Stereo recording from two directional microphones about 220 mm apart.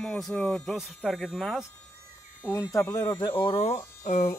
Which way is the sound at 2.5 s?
15° left (ahead or behind).